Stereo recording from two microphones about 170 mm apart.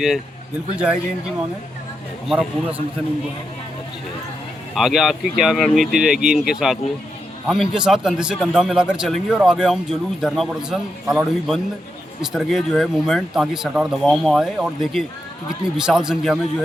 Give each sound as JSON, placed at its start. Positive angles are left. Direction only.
{"t": 2.2, "sound": "a man's voice", "side_deg": -5}
{"t": 4.7, "sound": "a man's voice", "side_deg": 0}